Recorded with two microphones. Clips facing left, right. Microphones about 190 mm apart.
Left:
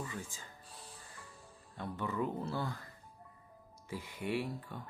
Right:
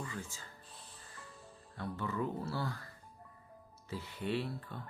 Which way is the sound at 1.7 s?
15° left (ahead or behind).